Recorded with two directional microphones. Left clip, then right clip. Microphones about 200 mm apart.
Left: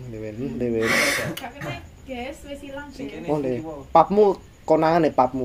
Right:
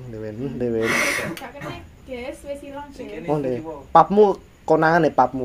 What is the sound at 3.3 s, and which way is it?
A man's voice, 10° right (ahead or behind).